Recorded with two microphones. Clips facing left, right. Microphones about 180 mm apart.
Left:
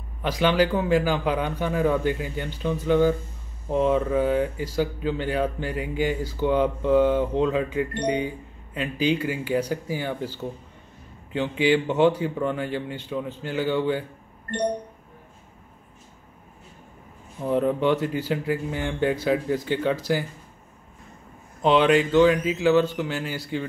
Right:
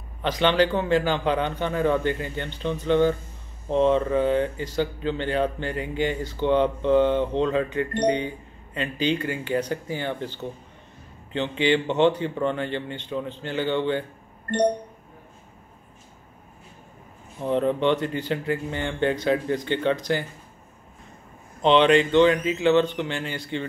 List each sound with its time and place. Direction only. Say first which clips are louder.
0.2 s speech: even; 5° left (ahead or behind)
17.4 s speech: even; 5° left (ahead or behind)
21.6 s speech: right 1 dB; 5° left (ahead or behind)